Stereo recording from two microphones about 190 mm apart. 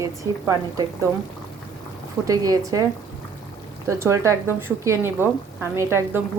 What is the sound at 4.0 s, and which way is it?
A woman's voice, 15° right (ahead or behind).